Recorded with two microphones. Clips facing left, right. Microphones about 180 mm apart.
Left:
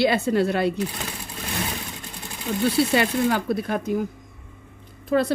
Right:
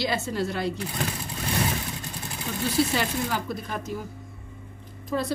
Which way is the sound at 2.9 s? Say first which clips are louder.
Left 6 dB; 65° left (ahead or behind).